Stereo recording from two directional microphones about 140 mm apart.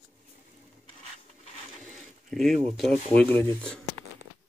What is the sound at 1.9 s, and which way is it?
Speech, centre (ahead or behind).